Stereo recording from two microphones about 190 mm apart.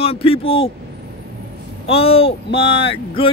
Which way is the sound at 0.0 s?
30° left (ahead or behind).